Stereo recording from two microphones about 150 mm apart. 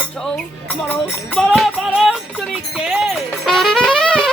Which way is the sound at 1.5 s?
Centre (ahead or behind).